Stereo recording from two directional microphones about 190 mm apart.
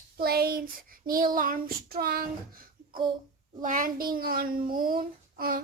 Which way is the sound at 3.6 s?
45° right (ahead or behind).